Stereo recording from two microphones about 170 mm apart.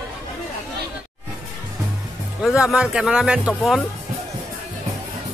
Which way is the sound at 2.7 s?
5° right (ahead or behind).